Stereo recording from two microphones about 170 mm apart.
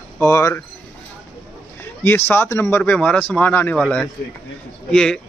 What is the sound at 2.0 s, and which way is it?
Speech, 15° left (ahead or behind).